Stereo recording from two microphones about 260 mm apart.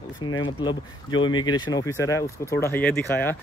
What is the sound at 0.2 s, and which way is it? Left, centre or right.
Speech, centre.